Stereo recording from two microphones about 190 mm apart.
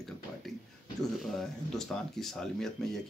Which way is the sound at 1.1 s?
Centre (ahead or behind).